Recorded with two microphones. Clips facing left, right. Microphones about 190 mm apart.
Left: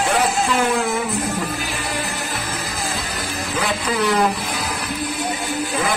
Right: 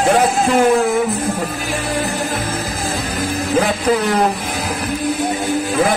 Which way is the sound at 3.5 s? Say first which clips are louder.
Right 7 dB; 45° right (ahead or behind).